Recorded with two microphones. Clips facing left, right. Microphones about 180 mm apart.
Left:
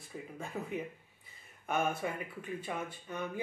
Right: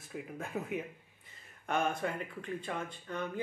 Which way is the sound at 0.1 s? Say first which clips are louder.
Right 2 dB; 10° right (ahead or behind).